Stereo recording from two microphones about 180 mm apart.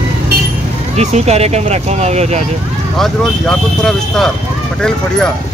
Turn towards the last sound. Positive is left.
turn(degrees=5)  # may be behind; listen again after turning